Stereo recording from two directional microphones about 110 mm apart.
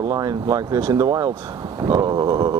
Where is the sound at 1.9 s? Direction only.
40° right (ahead or behind).